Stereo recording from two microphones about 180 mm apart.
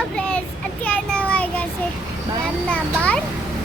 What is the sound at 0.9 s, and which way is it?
Child singing, 5° left (ahead or behind).